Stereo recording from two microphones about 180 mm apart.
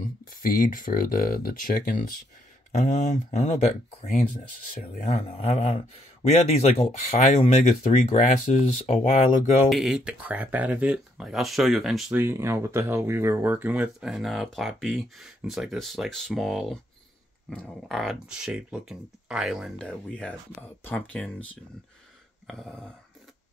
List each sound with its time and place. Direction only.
0.0 s speech: 50° left (ahead or behind)
2.8 s speech: 40° left (ahead or behind)
4.9 s speech: 35° left (ahead or behind)
9.7 s speech: centre (ahead or behind)